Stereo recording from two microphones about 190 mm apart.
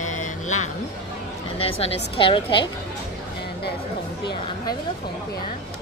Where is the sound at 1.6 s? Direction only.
30° left (ahead or behind).